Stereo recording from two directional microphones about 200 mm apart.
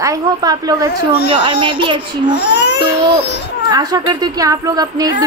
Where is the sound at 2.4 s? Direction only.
60° left (ahead or behind).